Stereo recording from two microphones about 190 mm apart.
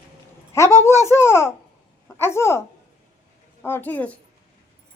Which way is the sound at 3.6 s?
10° left (ahead or behind).